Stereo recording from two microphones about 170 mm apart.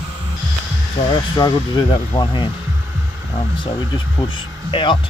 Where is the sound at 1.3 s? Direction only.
25° left (ahead or behind).